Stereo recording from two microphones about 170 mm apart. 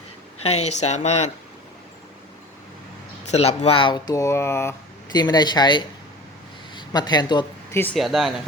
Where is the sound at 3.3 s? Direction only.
40° left (ahead or behind).